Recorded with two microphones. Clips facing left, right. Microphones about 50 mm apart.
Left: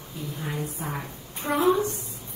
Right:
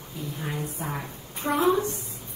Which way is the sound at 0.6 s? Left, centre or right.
Right.